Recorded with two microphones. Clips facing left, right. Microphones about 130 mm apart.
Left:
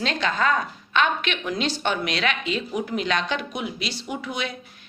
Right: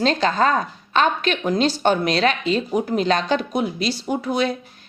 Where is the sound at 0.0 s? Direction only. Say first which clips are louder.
Right 6 dB; 35° right (ahead or behind).